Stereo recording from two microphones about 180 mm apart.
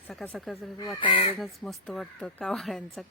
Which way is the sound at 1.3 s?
Centre (ahead or behind).